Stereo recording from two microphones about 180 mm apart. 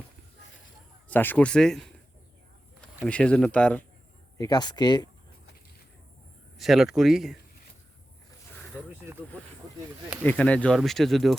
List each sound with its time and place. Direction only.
1.0 s speech: 10° left (ahead or behind)
3.0 s speech: 5° left (ahead or behind)
4.4 s speech: 20° left (ahead or behind)
6.6 s speech: centre (ahead or behind)
8.5 s a sound: 5° left (ahead or behind)
10.2 s speech: 5° left (ahead or behind)